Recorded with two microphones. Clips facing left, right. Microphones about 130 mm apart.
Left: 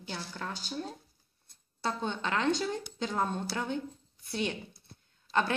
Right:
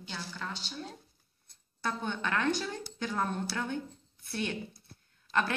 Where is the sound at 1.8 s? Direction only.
20° left (ahead or behind).